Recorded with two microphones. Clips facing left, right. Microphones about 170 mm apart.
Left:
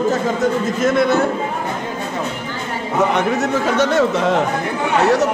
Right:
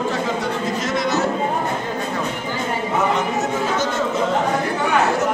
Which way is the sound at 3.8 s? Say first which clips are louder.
Left 5 dB; 70° left (ahead or behind).